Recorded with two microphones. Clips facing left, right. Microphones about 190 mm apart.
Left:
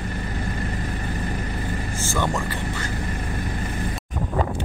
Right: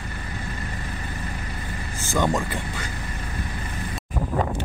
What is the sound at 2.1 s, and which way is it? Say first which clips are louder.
Speech: right 3 dB; 15° right (ahead or behind).